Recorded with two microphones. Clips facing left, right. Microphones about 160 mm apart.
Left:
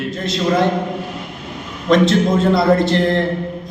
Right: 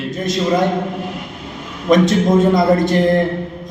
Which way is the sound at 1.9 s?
15° right (ahead or behind).